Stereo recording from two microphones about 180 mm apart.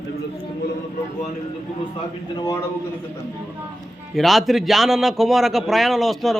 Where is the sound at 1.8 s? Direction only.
25° left (ahead or behind).